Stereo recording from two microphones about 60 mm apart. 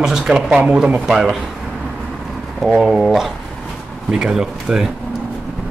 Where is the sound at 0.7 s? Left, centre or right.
Centre.